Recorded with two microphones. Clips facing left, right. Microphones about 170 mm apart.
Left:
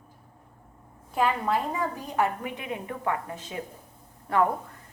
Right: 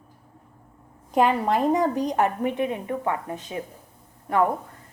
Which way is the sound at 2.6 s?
25° right (ahead or behind).